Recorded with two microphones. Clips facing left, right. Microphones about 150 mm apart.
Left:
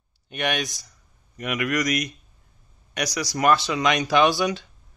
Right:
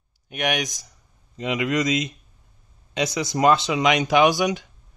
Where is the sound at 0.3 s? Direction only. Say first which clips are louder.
Right 1 dB; 15° right (ahead or behind).